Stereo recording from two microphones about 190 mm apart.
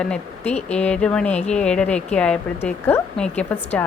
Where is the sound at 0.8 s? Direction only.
5° left (ahead or behind).